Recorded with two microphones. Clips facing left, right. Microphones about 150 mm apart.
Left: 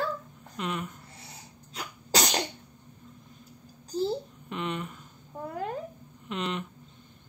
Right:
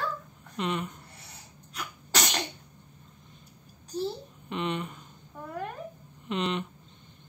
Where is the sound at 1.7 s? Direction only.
30° left (ahead or behind).